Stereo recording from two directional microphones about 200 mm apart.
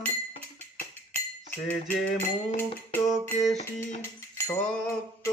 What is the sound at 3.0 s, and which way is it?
Music, centre (ahead or behind).